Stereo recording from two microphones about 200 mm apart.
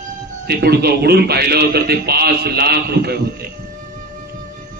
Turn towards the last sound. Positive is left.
turn(degrees=-50)  # may be behind; listen again after turning